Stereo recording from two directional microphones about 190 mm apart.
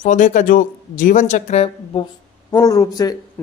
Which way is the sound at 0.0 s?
40° left (ahead or behind).